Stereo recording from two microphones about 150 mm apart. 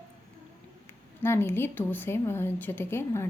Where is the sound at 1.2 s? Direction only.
15° left (ahead or behind).